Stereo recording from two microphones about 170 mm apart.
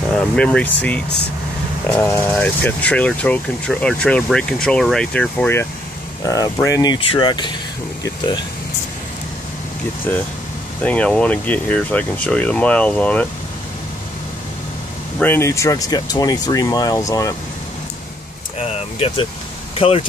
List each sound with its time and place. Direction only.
0.1 s speech: 5° left (ahead or behind); by 7.5 s 25° left (ahead or behind)
10.8 s speech: 10° left (ahead or behind)
15.1 s speech: 10° left (ahead or behind)
18.6 s speech: 35° left (ahead or behind)